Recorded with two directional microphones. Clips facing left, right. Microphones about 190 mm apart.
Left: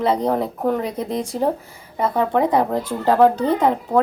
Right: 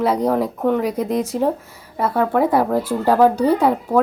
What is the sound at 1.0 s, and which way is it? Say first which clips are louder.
Speech: right 4 dB; 35° left (ahead or behind).